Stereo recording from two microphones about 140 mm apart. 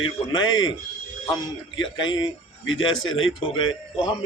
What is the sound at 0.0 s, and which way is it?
A man's voice, 35° left (ahead or behind).